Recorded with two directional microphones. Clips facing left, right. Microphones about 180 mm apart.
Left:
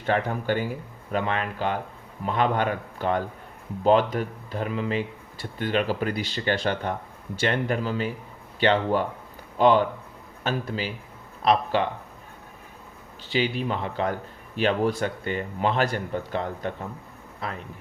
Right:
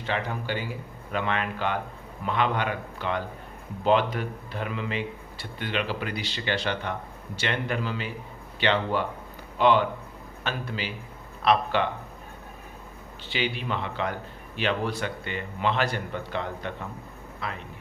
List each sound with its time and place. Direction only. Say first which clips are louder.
0.0 s speech: left 5 dB; 50° left (ahead or behind)
13.2 s speech: left 4 dB; 40° left (ahead or behind)